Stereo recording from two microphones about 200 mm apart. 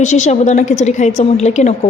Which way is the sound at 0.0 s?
35° left (ahead or behind).